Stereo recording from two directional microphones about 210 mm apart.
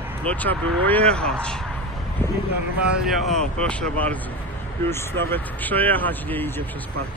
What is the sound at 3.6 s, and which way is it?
Speech, 5° left (ahead or behind).